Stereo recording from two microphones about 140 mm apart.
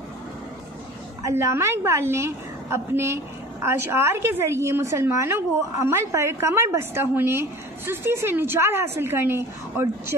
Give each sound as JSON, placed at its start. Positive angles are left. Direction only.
{"t": 1.2, "sound": "a woman's voice", "side_deg": -20}